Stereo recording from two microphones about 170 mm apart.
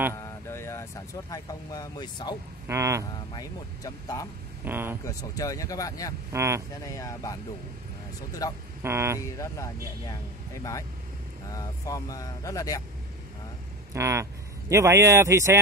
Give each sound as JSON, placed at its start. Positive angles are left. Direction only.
{"t": 0.1, "sound": "a sound", "side_deg": 15}
{"t": 1.3, "sound": "speech", "side_deg": 20}
{"t": 2.7, "sound": "speech", "side_deg": -15}
{"t": 3.3, "sound": "speech", "side_deg": 20}
{"t": 4.6, "sound": "speech", "side_deg": -10}
{"t": 5.0, "sound": "speech", "side_deg": 20}
{"t": 6.3, "sound": "speech", "side_deg": -15}
{"t": 7.0, "sound": "speech", "side_deg": 20}
{"t": 8.4, "sound": "speech", "side_deg": 20}
{"t": 8.8, "sound": "speech", "side_deg": -15}
{"t": 9.4, "sound": "speech", "side_deg": 20}
{"t": 13.9, "sound": "speech", "side_deg": -15}